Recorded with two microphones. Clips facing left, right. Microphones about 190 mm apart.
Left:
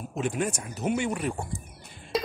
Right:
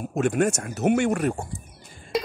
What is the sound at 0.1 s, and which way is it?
Speech, 50° right (ahead or behind).